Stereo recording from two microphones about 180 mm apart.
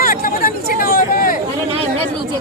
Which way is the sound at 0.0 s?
50° left (ahead or behind).